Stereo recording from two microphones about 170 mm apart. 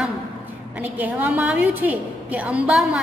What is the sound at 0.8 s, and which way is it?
A woman's voice, 10° right (ahead or behind).